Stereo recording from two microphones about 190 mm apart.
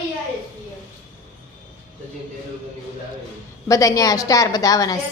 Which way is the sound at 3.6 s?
15° left (ahead or behind).